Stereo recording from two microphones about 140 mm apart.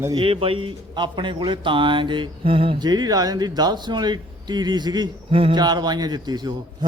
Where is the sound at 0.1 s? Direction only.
40° right (ahead or behind).